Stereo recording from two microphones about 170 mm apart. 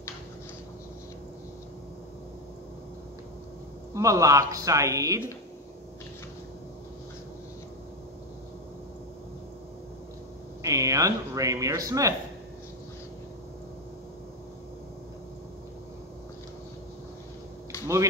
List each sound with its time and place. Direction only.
3.9 s speech: 20° right (ahead or behind)
10.6 s speech: 20° right (ahead or behind)
17.7 s a sound: 15° left (ahead or behind)